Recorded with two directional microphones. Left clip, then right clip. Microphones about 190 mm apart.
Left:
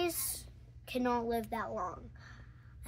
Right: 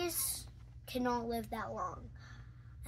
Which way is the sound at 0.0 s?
35° left (ahead or behind).